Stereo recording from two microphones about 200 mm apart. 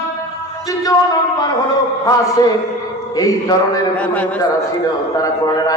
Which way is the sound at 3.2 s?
15° left (ahead or behind).